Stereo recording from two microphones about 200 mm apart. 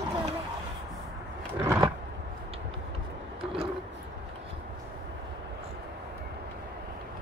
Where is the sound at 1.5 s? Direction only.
10° right (ahead or behind).